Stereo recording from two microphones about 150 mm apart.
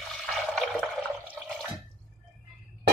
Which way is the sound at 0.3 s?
5° left (ahead or behind).